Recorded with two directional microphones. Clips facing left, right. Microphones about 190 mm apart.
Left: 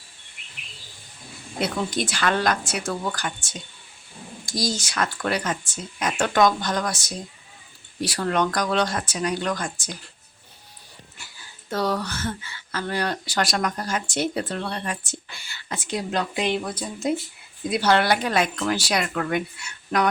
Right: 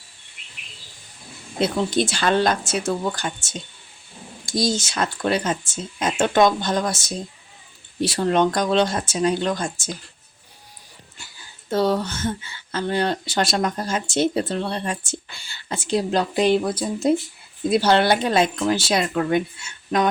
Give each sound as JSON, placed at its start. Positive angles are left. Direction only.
{"t": 1.5, "sound": "speech", "side_deg": -25}
{"t": 11.7, "sound": "speech", "side_deg": -25}